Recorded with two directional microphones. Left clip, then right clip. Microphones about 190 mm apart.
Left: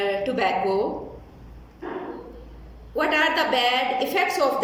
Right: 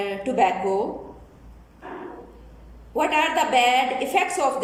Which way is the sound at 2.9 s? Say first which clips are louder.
Even; 15° right (ahead or behind).